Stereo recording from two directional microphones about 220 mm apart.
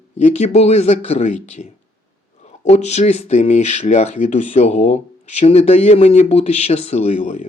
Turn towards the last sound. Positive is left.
turn(degrees=30)  # may be behind; listen again after turning